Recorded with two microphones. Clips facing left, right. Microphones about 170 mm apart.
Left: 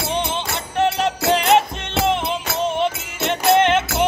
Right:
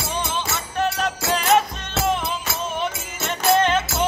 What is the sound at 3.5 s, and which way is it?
Music, 25° left (ahead or behind).